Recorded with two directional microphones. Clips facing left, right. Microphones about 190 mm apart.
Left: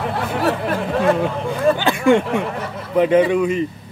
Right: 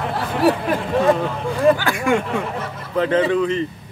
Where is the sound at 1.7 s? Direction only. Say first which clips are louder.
Left 4 dB; 25° left (ahead or behind).